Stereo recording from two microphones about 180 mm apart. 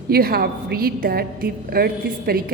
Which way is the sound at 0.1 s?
60° right (ahead or behind).